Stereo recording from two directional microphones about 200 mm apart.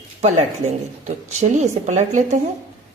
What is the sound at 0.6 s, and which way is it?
A woman's voice, 35° right (ahead or behind).